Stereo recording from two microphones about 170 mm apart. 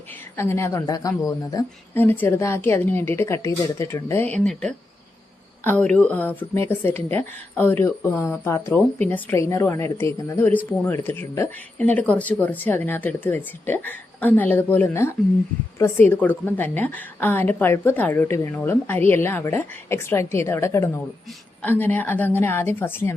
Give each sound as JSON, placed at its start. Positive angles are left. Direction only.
{"t": 0.3, "sound": "a woman's voice", "side_deg": 15}